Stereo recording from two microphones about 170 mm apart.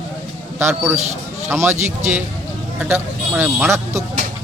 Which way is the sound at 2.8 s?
10° right (ahead or behind).